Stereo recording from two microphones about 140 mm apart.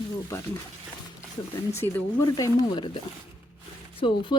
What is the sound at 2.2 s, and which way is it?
Speech, 30° left (ahead or behind).